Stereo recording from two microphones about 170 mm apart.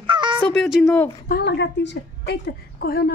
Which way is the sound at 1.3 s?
80° left.